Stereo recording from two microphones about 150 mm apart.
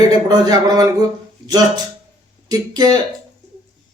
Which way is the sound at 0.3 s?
25° right (ahead or behind).